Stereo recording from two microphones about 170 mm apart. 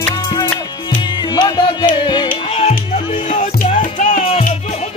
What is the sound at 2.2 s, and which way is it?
Music, 40° left (ahead or behind).